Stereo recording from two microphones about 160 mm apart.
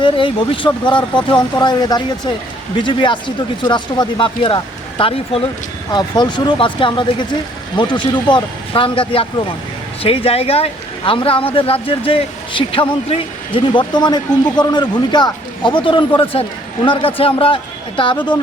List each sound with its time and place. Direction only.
0.0 s speech: 30° left (ahead or behind)